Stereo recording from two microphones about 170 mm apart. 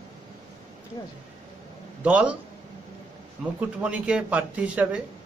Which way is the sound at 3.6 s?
10° right (ahead or behind).